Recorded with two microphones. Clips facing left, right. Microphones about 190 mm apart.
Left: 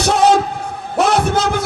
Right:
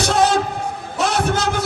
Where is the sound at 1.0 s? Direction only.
60° left (ahead or behind).